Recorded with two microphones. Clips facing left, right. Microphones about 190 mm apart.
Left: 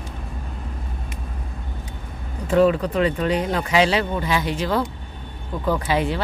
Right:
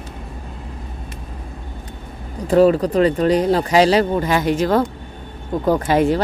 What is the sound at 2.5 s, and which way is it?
Speech, 40° right (ahead or behind).